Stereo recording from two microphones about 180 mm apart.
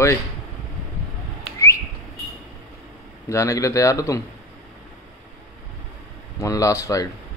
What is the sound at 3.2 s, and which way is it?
Speech, 15° left (ahead or behind).